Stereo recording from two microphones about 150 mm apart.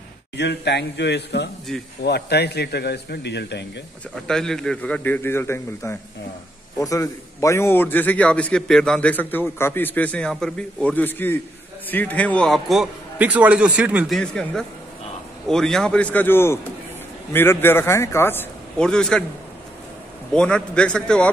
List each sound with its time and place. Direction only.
1.3 s a man's voice: 90° left
1.7 s a man's voice: centre (ahead or behind)
2.0 s a man's voice: 90° left
4.1 s a man's voice: 5° left (ahead or behind)
14.1 s a man's voice: 5° left (ahead or behind)
20.3 s a man's voice: 5° left (ahead or behind)